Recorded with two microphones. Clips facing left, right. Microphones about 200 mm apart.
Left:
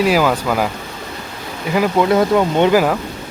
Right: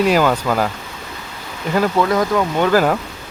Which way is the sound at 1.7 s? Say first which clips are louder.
Left 1 dB; 10° left (ahead or behind).